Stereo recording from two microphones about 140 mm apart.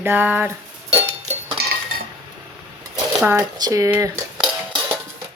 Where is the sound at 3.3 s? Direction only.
25° right (ahead or behind).